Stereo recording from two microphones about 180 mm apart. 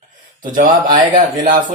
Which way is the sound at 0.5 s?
50° right (ahead or behind).